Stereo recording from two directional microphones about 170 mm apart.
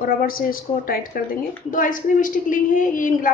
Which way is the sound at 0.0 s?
60° left (ahead or behind).